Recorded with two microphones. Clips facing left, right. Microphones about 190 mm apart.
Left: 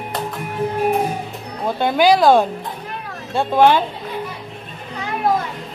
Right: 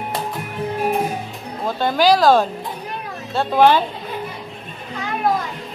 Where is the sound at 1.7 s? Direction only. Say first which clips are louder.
Left 1 dB; 15° left (ahead or behind).